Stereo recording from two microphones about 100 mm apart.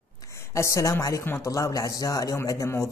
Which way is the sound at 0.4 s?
30° left (ahead or behind).